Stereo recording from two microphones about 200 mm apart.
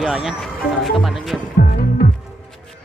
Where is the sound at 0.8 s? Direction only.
Centre (ahead or behind).